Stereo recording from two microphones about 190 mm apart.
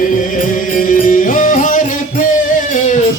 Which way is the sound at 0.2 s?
45° left (ahead or behind).